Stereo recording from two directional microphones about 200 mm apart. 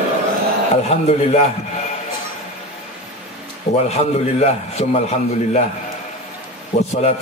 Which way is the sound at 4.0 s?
30° left (ahead or behind).